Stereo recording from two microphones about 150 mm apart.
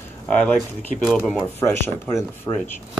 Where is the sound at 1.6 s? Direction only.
15° left (ahead or behind).